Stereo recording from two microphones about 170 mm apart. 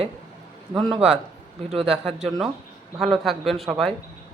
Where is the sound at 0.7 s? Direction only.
25° right (ahead or behind).